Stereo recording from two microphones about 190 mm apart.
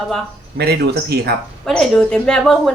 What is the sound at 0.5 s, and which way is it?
Speech, 55° right (ahead or behind).